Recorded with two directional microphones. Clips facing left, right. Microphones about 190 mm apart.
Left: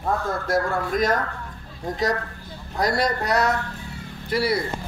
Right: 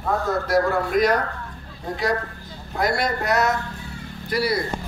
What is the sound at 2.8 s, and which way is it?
Speech, 35° left (ahead or behind).